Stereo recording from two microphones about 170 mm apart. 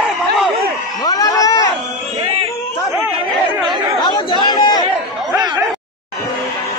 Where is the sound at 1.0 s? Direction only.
20° left (ahead or behind).